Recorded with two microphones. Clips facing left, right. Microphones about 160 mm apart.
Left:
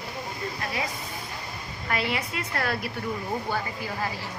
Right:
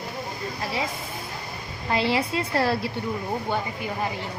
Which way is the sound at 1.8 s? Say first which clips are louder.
Right 5 dB; 30° right (ahead or behind).